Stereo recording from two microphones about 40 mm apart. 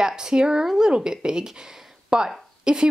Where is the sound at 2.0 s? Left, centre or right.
Centre.